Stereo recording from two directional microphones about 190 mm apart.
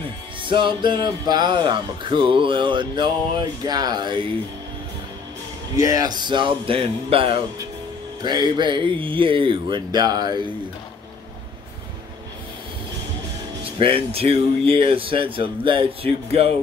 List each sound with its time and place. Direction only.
0.4 s speech: 25° right (ahead or behind)
5.8 s speech: 20° right (ahead or behind)
13.7 s speech: 30° right (ahead or behind)